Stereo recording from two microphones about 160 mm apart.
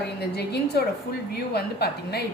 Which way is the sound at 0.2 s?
90° left.